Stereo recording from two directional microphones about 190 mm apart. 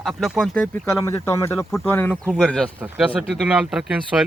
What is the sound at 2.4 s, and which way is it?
Speech, 5° left (ahead or behind).